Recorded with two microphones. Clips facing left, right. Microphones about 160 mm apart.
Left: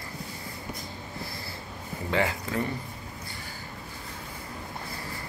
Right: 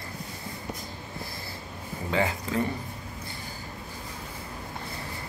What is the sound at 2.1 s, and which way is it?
Speech, 20° right (ahead or behind).